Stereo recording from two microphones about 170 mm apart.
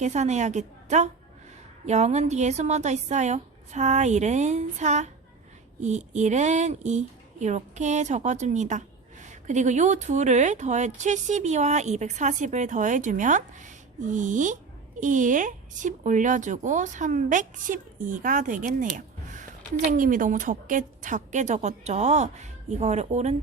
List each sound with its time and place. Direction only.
0.0 s speech: 45° right (ahead or behind)